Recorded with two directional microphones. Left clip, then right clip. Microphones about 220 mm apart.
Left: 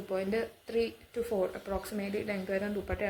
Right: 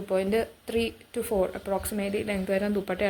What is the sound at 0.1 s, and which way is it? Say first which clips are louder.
A woman's voice: right 7 dB; 45° right (ahead or behind).